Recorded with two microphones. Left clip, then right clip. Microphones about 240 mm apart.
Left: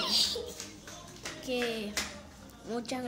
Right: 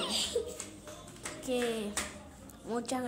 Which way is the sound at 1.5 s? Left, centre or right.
Centre.